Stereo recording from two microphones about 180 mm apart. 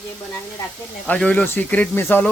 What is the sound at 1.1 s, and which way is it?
Speech, 10° left (ahead or behind).